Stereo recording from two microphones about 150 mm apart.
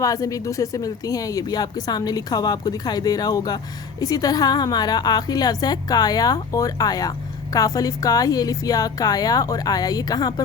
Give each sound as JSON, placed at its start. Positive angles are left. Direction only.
{"t": 0.0, "sound": "speech", "side_deg": 20}